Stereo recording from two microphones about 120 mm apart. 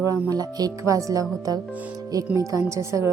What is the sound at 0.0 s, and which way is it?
A woman's voice, 30° right (ahead or behind).